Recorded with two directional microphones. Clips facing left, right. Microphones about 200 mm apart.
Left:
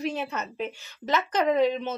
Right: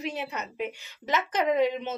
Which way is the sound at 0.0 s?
15° right (ahead or behind).